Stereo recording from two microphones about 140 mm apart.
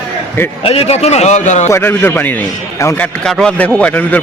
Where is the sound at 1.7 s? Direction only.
15° left (ahead or behind).